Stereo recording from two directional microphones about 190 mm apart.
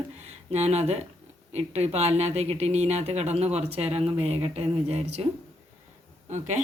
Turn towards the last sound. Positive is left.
turn(degrees=-40)  # may be behind; listen again after turning